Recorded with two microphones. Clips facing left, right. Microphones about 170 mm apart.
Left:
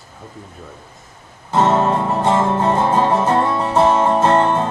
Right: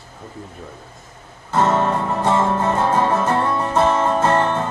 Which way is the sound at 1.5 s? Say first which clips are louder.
Left 2 dB; 20° left (ahead or behind).